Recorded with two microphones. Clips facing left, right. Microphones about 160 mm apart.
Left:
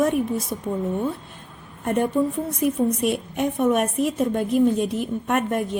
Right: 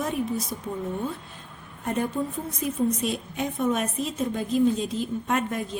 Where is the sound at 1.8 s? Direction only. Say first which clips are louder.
Left 6 dB; 65° left (ahead or behind).